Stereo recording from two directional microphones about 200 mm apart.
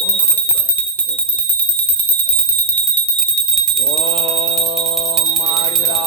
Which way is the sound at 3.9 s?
30° right (ahead or behind).